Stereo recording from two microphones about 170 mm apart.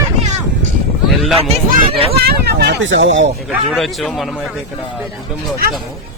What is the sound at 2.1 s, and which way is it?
Speech, 70° right (ahead or behind).